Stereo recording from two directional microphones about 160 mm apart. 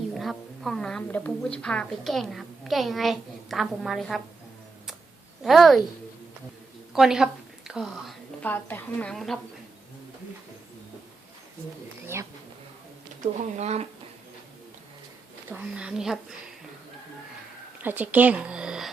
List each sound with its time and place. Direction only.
0.1 s a woman's voice: centre (ahead or behind)
5.4 s a child's voice: centre (ahead or behind)
6.9 s a woman's voice: 5° right (ahead or behind)
8.4 s a woman's voice: 10° left (ahead or behind)
13.2 s speech: 45° right (ahead or behind)
15.4 s a woman's voice: 10° right (ahead or behind)
17.8 s speech: 10° right (ahead or behind)